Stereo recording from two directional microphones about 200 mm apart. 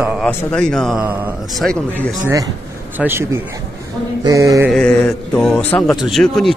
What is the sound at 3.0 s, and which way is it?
Speech, 10° right (ahead or behind).